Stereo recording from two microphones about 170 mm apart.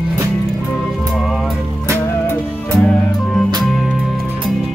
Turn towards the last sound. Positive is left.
turn(degrees=5)  # may be behind; listen again after turning